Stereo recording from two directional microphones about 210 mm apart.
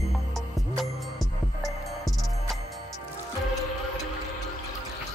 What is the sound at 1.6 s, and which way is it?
Music, centre (ahead or behind).